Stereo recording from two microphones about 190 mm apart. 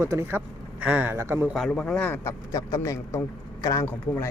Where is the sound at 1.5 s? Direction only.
Centre (ahead or behind).